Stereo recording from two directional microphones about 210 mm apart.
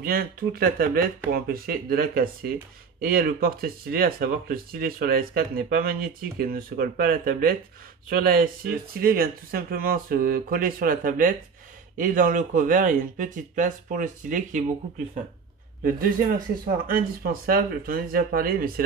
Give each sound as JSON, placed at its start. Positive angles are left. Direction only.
{"t": 0.0, "sound": "speech", "side_deg": -45}
{"t": 16.6, "sound": "speech", "side_deg": -40}